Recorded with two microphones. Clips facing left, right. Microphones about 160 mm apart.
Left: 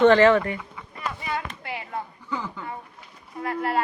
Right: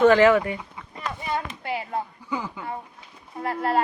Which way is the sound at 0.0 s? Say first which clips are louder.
Even; 10° right (ahead or behind).